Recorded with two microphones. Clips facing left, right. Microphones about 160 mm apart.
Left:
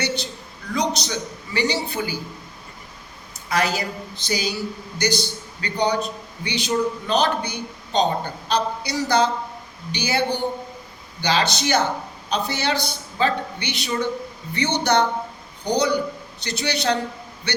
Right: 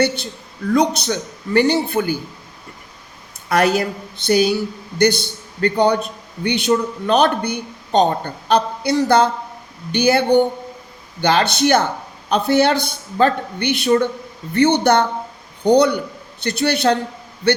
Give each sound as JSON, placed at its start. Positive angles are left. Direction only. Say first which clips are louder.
{"t": 0.7, "sound": "speech", "louder": "right 7 dB", "side_deg": -55}
{"t": 3.5, "sound": "a man's voice", "louder": "right 7 dB", "side_deg": -55}